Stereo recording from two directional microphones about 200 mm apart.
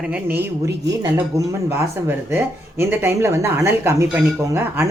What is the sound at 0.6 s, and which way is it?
A man's voice, 15° right (ahead or behind).